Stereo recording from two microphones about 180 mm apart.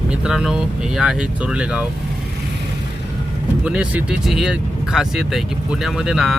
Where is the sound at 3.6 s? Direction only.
5° right (ahead or behind).